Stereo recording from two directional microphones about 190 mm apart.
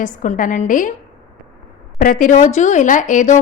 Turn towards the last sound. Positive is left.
turn(degrees=40)  # may be behind; listen again after turning